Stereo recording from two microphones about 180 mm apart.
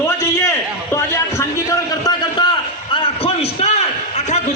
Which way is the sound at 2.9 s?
30° left (ahead or behind).